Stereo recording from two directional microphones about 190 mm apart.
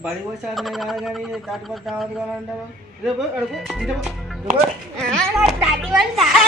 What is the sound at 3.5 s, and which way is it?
A child's voice, centre (ahead or behind).